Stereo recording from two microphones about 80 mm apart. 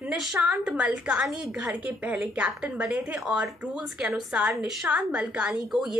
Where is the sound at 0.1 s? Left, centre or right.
Centre.